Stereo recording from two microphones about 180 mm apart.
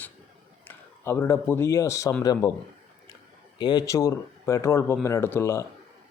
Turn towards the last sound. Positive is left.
turn(degrees=15)  # may be behind; listen again after turning